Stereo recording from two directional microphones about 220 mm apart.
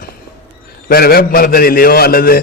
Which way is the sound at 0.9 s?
45° left (ahead or behind).